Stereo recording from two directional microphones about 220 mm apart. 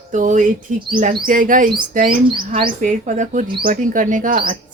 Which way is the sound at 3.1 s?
35° right (ahead or behind).